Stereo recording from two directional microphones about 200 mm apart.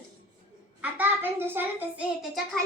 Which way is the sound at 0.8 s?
10° right (ahead or behind).